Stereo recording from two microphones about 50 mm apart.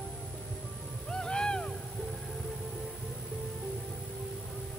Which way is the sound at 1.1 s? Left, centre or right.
Centre.